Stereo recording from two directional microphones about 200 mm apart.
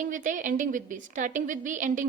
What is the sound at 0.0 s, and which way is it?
A woman's voice, 40° right (ahead or behind).